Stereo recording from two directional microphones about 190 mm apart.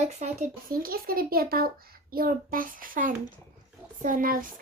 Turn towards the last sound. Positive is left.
turn(degrees=-45)  # may be behind; listen again after turning